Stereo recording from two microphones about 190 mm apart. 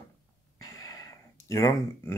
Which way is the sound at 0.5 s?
20° left (ahead or behind).